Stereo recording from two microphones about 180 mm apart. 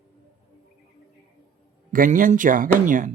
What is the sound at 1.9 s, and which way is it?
A man's voice, 50° right (ahead or behind).